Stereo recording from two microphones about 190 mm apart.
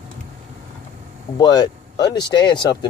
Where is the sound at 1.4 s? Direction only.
20° left (ahead or behind).